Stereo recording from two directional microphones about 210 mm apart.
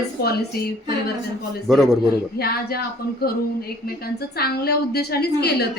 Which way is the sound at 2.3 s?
50° left (ahead or behind).